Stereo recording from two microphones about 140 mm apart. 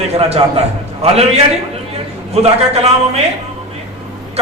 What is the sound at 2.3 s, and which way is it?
Speech, 50° right (ahead or behind).